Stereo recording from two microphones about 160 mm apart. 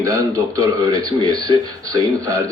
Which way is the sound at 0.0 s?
20° right (ahead or behind).